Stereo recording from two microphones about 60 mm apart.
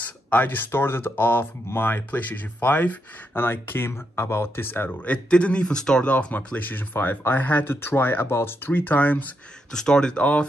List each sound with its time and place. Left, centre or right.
0.0 s a sound: left
0.7 s speech: left
5.0 s a man's voice: centre
6.1 s speech: left
9.7 s a man's voice: centre